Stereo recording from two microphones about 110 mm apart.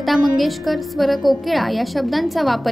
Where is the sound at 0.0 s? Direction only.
Centre (ahead or behind).